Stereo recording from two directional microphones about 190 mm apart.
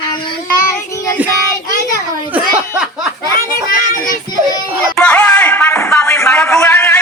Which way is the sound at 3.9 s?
45° left (ahead or behind).